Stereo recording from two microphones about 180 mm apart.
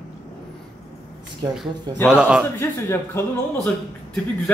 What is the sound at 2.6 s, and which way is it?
Speech, 15° left (ahead or behind).